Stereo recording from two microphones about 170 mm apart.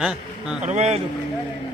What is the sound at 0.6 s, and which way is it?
Speech, 40° right (ahead or behind).